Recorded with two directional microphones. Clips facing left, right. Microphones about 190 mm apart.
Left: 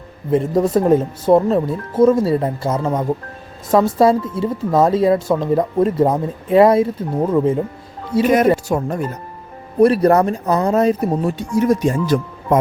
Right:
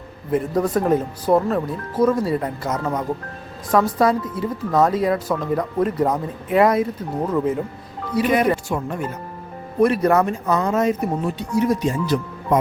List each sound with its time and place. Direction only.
0.3 s speech: 25° left (ahead or behind)
8.7 s speech: 40° left (ahead or behind)
11.3 s speech: 45° left (ahead or behind)